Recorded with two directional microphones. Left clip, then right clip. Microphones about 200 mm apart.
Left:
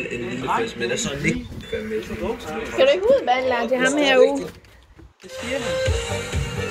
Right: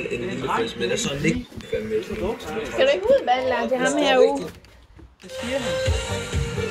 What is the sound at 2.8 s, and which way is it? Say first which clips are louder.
A woman's voice: left 2 dB; 20° left (ahead or behind).